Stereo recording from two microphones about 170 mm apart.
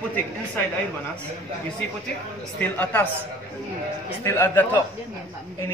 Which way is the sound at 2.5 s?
10° left (ahead or behind).